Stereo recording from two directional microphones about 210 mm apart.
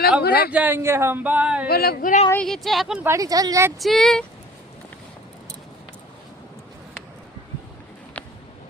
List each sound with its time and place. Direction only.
0.2 s speech: 50° left (ahead or behind)
0.5 s speech: 10° right (ahead or behind)
1.6 s speech: 45° left (ahead or behind)
2.3 s speech: 5° left (ahead or behind); by 3.7 s 15° right (ahead or behind)
3.8 s speech: centre (ahead or behind)